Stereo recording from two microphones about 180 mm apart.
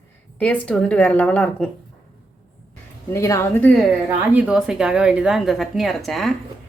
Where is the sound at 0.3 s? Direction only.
5° left (ahead or behind).